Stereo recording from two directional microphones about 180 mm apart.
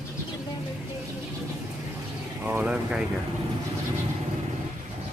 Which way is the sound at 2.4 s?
10° right (ahead or behind).